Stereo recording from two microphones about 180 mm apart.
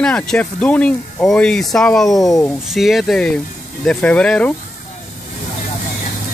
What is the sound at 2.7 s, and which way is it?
Speech, centre (ahead or behind).